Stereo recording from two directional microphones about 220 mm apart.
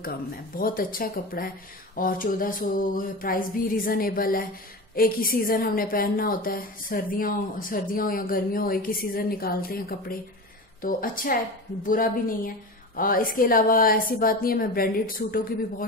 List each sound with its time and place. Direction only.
0.6 s a woman's voice: 40° left (ahead or behind)